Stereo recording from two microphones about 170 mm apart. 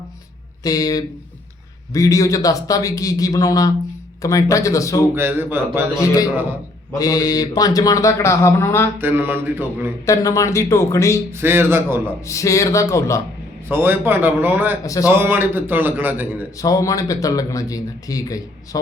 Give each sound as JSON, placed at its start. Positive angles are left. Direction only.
{"t": 0.6, "sound": "speech", "side_deg": 20}
{"t": 5.1, "sound": "a man's voice", "side_deg": -15}
{"t": 7.0, "sound": "speech", "side_deg": 20}
{"t": 9.0, "sound": "a man's voice", "side_deg": -10}
{"t": 10.1, "sound": "speech", "side_deg": 20}
{"t": 11.3, "sound": "a man's voice", "side_deg": -15}
{"t": 12.2, "sound": "speech", "side_deg": 20}
{"t": 13.7, "sound": "a man's voice", "side_deg": -10}
{"t": 16.6, "sound": "speech", "side_deg": 20}